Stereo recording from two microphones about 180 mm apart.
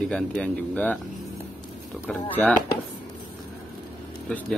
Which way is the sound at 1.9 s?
Centre (ahead or behind).